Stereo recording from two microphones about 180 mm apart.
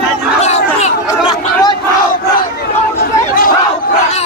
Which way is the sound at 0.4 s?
40° left (ahead or behind).